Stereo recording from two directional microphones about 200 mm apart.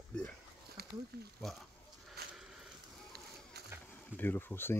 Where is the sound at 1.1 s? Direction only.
55° right (ahead or behind).